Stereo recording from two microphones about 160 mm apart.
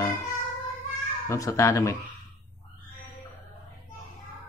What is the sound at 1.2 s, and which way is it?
Speech, 20° left (ahead or behind).